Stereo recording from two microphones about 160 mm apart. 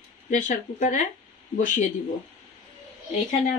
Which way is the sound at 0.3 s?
50° left (ahead or behind).